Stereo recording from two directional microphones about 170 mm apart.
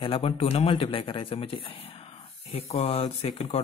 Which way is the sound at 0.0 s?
35° left (ahead or behind).